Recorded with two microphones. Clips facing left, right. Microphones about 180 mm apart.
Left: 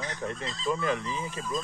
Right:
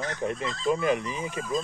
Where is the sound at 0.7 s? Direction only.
15° right (ahead or behind).